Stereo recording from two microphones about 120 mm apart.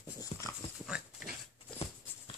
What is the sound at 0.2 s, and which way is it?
Dog, 25° left (ahead or behind).